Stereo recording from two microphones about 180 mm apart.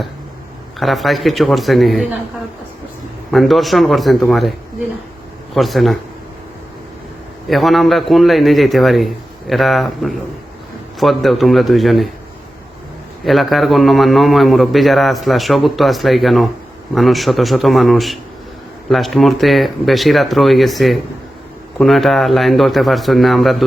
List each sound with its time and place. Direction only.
0.8 s a man's voice: centre (ahead or behind)
3.3 s a man's voice: centre (ahead or behind)
5.5 s a man's voice: centre (ahead or behind)
7.4 s a man's voice: centre (ahead or behind)
13.2 s a man's voice: centre (ahead or behind)